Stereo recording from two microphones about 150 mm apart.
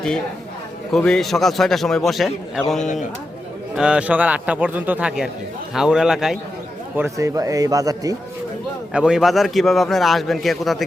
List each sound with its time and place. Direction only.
0.9 s a man's voice: 5° left (ahead or behind)
6.9 s a man's voice: 15° right (ahead or behind)
8.9 s a man's voice: 5° right (ahead or behind)